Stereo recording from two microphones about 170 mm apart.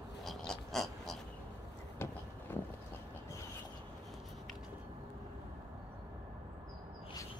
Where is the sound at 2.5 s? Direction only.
15° left (ahead or behind).